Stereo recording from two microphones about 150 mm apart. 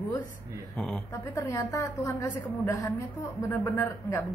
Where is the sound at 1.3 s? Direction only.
20° left (ahead or behind).